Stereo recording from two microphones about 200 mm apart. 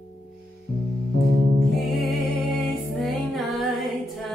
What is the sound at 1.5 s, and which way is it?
Music, centre (ahead or behind).